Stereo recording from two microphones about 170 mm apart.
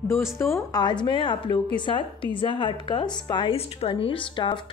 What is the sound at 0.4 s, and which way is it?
A woman's voice, 15° left (ahead or behind).